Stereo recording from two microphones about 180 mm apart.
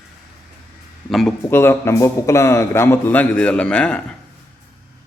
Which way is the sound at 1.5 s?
15° left (ahead or behind).